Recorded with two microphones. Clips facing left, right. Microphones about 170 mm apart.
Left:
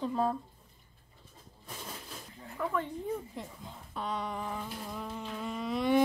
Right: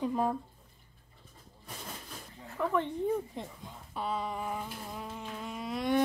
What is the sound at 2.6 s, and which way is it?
Speech, 20° right (ahead or behind).